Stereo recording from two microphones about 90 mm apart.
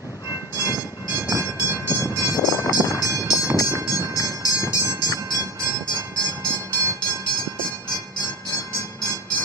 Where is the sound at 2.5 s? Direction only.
35° left (ahead or behind).